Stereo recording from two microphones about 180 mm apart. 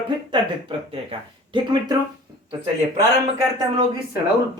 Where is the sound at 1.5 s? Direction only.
25° right (ahead or behind).